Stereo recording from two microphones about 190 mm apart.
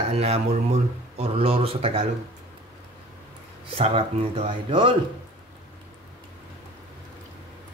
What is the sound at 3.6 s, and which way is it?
Speech, 30° right (ahead or behind).